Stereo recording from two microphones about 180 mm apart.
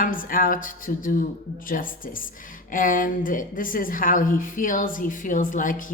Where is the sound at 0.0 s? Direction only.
50° left (ahead or behind).